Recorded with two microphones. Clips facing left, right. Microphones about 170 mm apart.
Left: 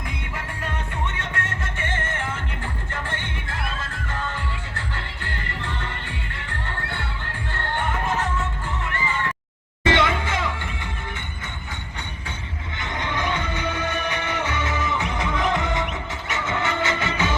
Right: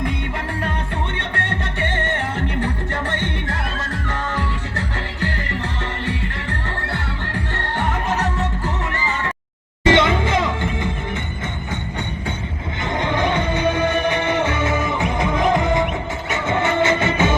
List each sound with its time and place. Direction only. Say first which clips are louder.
1.2 s music: right 5 dB; 35° right (ahead or behind)
9.8 s music: right 5 dB; 25° right (ahead or behind)
12.8 s music: right 7 dB; 25° right (ahead or behind)
14.3 s music: right 6 dB; 50° right (ahead or behind)
16.3 s train: right 6 dB; 20° right (ahead or behind)
17.0 s music: right 6 dB; 25° right (ahead or behind)